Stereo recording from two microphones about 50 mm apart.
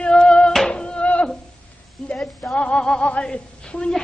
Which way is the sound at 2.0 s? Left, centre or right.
Centre.